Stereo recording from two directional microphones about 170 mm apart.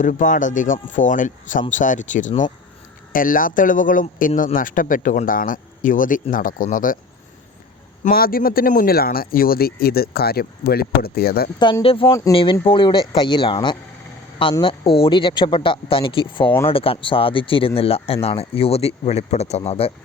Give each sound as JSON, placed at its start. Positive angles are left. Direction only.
{"t": 0.0, "sound": "speech", "side_deg": 50}
{"t": 8.0, "sound": "speech", "side_deg": 60}
{"t": 11.6, "sound": "speech", "side_deg": 30}